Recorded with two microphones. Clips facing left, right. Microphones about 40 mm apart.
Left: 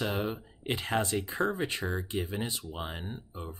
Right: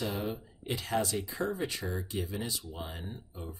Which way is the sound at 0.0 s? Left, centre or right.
Left.